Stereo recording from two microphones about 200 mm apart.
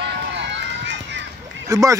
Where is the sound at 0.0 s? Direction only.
60° right (ahead or behind).